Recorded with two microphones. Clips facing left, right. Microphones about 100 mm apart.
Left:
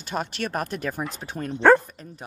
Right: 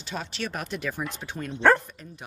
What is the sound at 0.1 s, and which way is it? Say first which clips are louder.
Speech: left 5 dB; 50° left (ahead or behind).